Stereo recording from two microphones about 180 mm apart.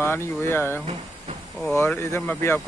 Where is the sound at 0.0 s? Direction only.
15° left (ahead or behind).